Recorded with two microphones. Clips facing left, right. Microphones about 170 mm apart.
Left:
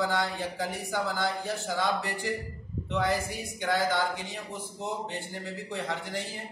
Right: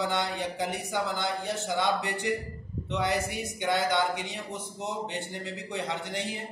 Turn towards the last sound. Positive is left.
turn(degrees=-20)  # may be behind; listen again after turning